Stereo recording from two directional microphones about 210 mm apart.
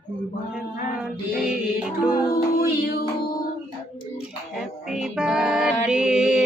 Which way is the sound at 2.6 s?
45° left (ahead or behind).